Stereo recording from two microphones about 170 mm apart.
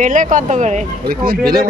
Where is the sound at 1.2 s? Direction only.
65° right (ahead or behind).